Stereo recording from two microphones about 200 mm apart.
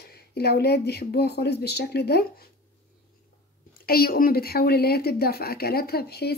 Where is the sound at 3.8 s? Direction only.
50° left (ahead or behind).